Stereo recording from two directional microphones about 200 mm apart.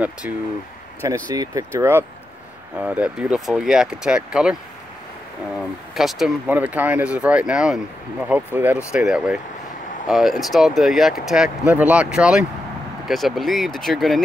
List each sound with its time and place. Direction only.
0.2 s speech: 10° right (ahead or behind)
5.6 s speech: centre (ahead or behind)